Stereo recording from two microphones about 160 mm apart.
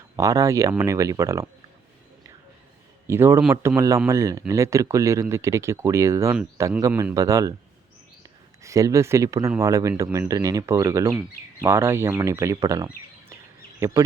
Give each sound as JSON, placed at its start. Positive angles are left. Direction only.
{"t": 0.2, "sound": "speech", "side_deg": -20}
{"t": 3.1, "sound": "speech", "side_deg": -15}